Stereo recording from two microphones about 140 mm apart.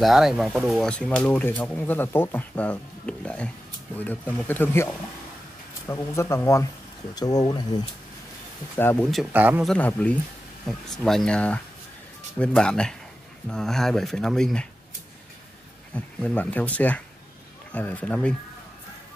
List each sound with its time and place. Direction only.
0.0 s speech: centre (ahead or behind); by 7.8 s 30° left (ahead or behind)
8.7 s speech: 15° left (ahead or behind)
9.3 s speech: 10° right (ahead or behind)
9.7 s speech: 10° left (ahead or behind)
15.9 s speech: 5° left (ahead or behind)